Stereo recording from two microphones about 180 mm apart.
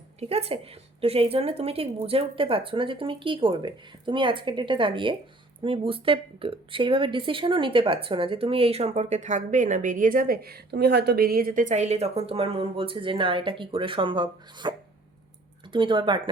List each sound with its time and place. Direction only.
0.2 s a woman's voice: 35° right (ahead or behind)